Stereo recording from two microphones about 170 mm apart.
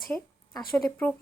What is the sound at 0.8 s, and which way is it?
Speech, 10° left (ahead or behind).